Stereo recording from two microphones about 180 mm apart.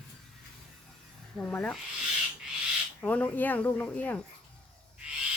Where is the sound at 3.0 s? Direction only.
10° left (ahead or behind).